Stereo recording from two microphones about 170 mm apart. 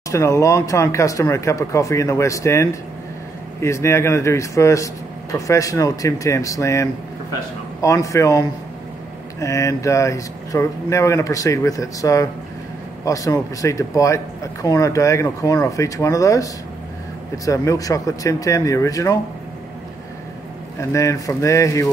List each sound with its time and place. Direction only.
0.1 s speech: 20° left (ahead or behind)
17.5 s speech: 20° left (ahead or behind)
20.9 s speech: 20° left (ahead or behind)